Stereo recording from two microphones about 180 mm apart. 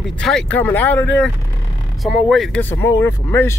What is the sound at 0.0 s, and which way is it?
Speech, 5° left (ahead or behind).